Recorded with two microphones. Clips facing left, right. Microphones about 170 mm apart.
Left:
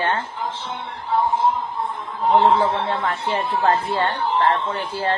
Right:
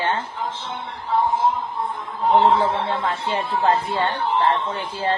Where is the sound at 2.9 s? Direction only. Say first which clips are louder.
Left 1 dB; 20° right (ahead or behind).